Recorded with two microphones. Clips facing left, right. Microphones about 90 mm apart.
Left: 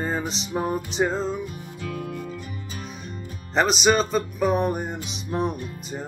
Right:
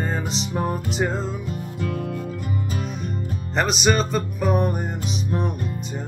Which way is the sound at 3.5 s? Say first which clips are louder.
Left 1 dB; centre (ahead or behind).